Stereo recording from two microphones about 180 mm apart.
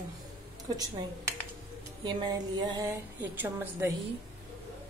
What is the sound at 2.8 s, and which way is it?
A woman's voice, 10° right (ahead or behind).